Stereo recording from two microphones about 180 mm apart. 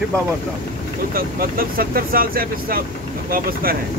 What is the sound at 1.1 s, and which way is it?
Speech, 55° right (ahead or behind).